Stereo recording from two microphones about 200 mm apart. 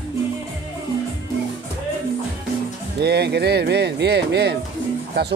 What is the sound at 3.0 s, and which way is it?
Speech, 55° right (ahead or behind).